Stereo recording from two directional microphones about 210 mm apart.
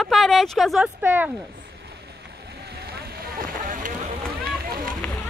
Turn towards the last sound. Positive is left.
turn(degrees=5)  # may be behind; listen again after turning